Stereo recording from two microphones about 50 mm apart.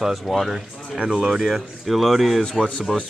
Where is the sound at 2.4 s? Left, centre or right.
Centre.